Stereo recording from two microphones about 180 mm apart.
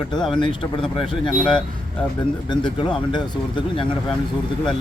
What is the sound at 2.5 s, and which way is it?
Speech, 25° left (ahead or behind).